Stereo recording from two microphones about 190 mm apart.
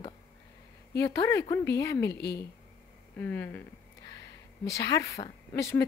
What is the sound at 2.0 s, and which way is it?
Speech, 60° left (ahead or behind).